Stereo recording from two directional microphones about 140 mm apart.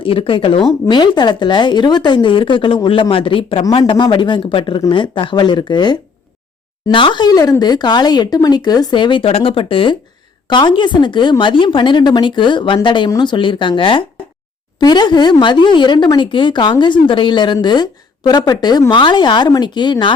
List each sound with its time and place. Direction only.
0.0 s speech: 40° left (ahead or behind)